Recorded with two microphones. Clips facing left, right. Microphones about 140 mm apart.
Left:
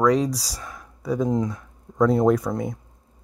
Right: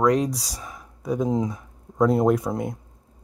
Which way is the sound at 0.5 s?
5° right (ahead or behind).